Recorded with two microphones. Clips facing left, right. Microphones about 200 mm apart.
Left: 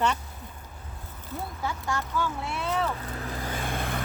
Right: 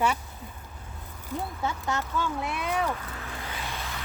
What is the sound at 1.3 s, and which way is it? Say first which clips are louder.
Speech: right 2 dB; 15° right (ahead or behind).